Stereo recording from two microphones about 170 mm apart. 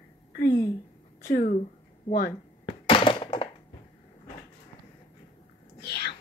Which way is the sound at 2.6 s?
30° left (ahead or behind).